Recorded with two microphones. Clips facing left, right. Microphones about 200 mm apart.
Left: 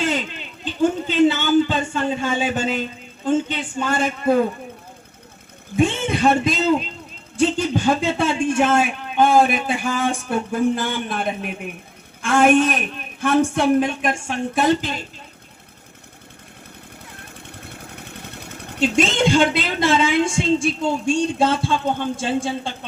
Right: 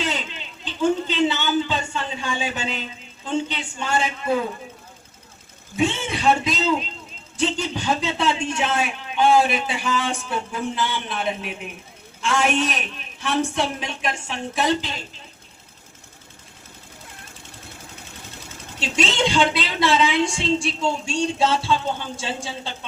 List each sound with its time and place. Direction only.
0.0 s a man's voice: 50° left (ahead or behind)
5.7 s a man's voice: 55° left (ahead or behind)
17.3 s speech: 60° left (ahead or behind)